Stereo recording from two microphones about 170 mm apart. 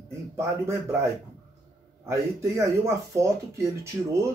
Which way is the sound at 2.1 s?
15° right (ahead or behind).